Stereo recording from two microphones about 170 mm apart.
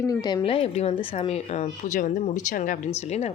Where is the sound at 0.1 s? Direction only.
20° left (ahead or behind).